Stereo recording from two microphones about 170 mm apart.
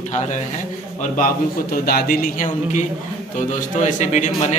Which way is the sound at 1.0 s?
55° left (ahead or behind).